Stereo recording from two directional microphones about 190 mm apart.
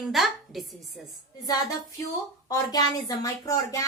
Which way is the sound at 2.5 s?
20° left (ahead or behind).